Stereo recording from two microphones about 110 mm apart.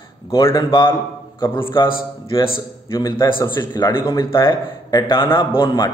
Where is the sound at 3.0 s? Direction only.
40° left (ahead or behind).